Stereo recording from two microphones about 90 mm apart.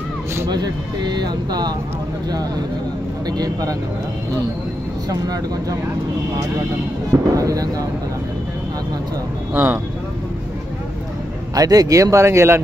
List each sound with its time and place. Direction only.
0.5 s speech: 50° right (ahead or behind)
3.3 s speech: 45° right (ahead or behind)
7.1 s speech: 40° right (ahead or behind)
9.5 s speech: 20° right (ahead or behind)
11.5 s speech: 45° right (ahead or behind)